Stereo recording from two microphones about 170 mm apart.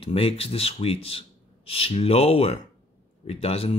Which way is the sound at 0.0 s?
35° left (ahead or behind).